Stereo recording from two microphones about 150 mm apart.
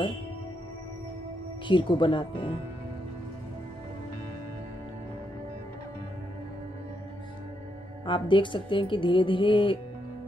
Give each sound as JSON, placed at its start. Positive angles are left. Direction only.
{"t": 1.7, "sound": "speech", "side_deg": 35}
{"t": 8.0, "sound": "speech", "side_deg": 30}